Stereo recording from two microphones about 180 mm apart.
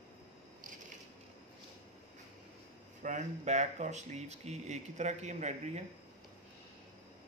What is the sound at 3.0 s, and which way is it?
Speech, 40° right (ahead or behind).